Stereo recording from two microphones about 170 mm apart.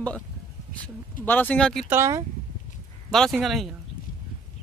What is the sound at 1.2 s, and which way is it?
Speech, 10° left (ahead or behind).